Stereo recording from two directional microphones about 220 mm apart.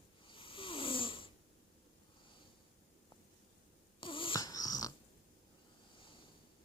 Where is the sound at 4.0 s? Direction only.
25° left (ahead or behind).